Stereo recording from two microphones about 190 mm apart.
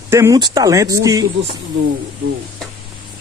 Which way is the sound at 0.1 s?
15° right (ahead or behind).